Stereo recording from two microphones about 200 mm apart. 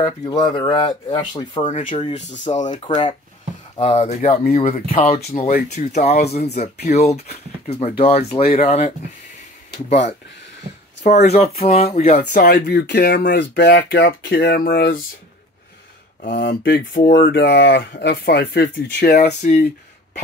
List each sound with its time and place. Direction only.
0.0 s speech: 20° left (ahead or behind)
2.4 s speech: 35° left (ahead or behind)
2.7 s speech: 25° left (ahead or behind)
11.6 s speech: 30° left (ahead or behind)
12.3 s speech: 55° left (ahead or behind)
16.2 s speech: 50° left (ahead or behind)
19.1 s speech: 40° left (ahead or behind)